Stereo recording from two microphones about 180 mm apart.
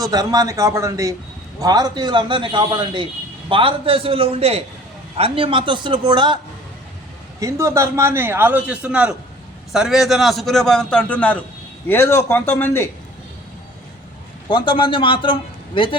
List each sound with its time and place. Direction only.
0.0 s a man's voice: 20° right (ahead or behind); by 12.9 s 10° left (ahead or behind)
14.4 s a man's voice: 25° left (ahead or behind)